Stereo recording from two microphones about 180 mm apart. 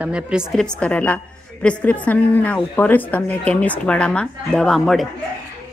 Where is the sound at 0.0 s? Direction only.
5° right (ahead or behind).